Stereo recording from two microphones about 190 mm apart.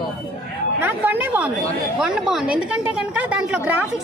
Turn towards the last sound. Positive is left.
turn(degrees=-5)  # may be behind; listen again after turning